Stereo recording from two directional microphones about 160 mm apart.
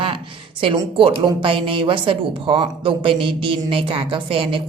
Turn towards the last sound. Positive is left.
turn(degrees=-35)  # may be behind; listen again after turning